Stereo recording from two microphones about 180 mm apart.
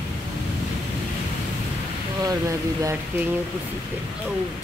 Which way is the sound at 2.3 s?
15° right (ahead or behind).